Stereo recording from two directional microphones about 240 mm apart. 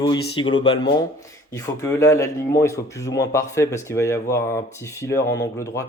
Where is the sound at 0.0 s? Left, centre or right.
Centre.